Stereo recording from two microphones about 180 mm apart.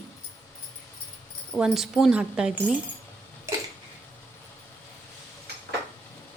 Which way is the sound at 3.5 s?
15° right (ahead or behind).